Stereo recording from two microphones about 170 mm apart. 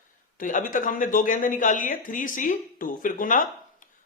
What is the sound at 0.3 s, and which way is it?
A man's voice, 50° left (ahead or behind).